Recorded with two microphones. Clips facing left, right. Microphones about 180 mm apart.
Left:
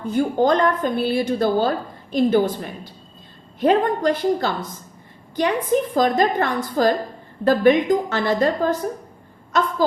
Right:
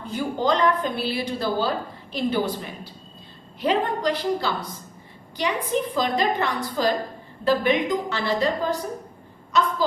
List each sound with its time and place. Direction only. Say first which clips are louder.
0.0 s a woman's voice: left 6 dB; 45° left (ahead or behind)